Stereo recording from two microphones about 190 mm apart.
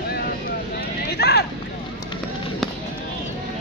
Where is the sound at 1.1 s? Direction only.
60° left (ahead or behind).